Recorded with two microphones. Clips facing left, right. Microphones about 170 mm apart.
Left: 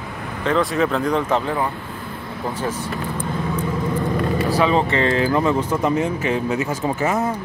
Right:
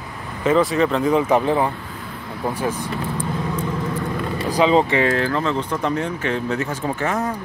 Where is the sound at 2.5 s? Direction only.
10° right (ahead or behind).